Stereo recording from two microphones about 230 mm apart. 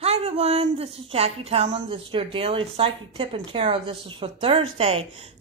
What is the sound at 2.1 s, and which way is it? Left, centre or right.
Speech, right.